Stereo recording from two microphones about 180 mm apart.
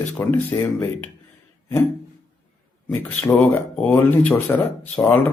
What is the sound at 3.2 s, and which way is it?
Speech, 10° left (ahead or behind).